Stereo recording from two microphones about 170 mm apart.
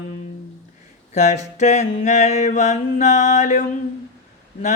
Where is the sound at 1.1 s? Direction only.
45° left (ahead or behind).